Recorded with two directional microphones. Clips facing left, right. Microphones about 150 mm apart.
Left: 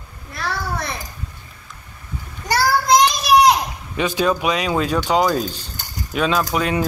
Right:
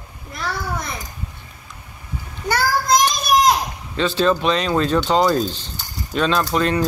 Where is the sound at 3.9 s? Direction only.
15° left (ahead or behind).